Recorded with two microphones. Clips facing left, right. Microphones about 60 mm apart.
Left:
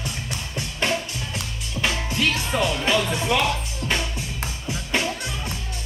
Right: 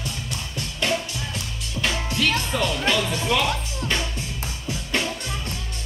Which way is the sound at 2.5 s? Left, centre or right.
Centre.